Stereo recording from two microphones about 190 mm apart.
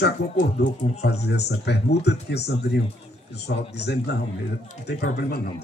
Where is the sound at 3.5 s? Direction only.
60° left (ahead or behind).